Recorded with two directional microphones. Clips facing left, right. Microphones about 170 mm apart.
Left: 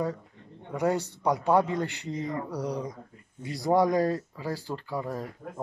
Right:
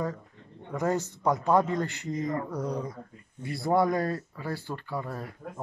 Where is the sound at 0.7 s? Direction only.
10° left (ahead or behind).